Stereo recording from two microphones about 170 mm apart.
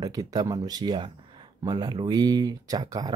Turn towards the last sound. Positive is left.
turn(degrees=-25)  # may be behind; listen again after turning